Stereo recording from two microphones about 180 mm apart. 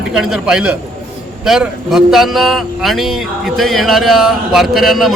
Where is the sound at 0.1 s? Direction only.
Centre (ahead or behind).